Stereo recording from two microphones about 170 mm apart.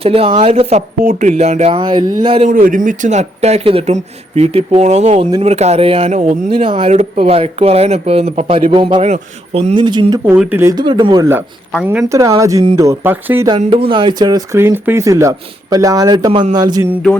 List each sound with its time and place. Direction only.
0.0 s speech: 35° right (ahead or behind)
2.4 s speech: 50° right (ahead or behind); by 10.3 s 25° right (ahead or behind)
10.3 s speech: 10° right (ahead or behind)
13.6 s speech: 35° right (ahead or behind)